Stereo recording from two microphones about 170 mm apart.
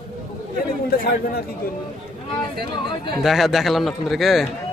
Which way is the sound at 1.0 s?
65° left (ahead or behind).